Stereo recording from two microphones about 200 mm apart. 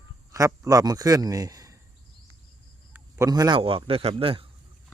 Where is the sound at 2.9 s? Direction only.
15° right (ahead or behind).